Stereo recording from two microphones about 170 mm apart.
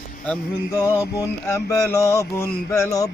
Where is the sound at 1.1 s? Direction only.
20° left (ahead or behind).